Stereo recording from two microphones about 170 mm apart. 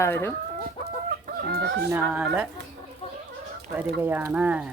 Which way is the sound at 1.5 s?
80° right.